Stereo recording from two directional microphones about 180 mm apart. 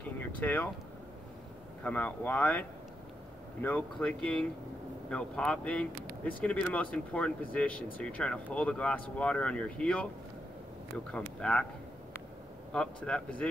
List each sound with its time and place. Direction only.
0.4 s speech: 10° left (ahead or behind)
1.8 s speech: 10° left (ahead or behind)
3.6 s speech: 5° left (ahead or behind)
11.4 s a man's voice: 5° left (ahead or behind)
12.7 s a man's voice: 5° left (ahead or behind)